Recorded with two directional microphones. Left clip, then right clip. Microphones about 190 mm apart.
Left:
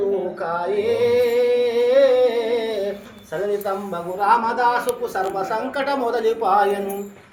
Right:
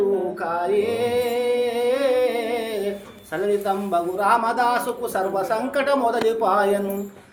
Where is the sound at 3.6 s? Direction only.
50° right (ahead or behind).